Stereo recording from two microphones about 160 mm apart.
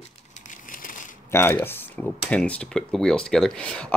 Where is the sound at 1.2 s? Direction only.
15° left (ahead or behind).